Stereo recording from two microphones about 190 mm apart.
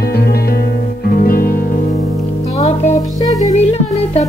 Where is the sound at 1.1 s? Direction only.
50° left (ahead or behind).